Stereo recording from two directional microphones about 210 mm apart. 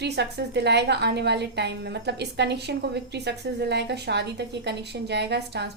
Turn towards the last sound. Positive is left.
turn(degrees=-55)  # may be behind; listen again after turning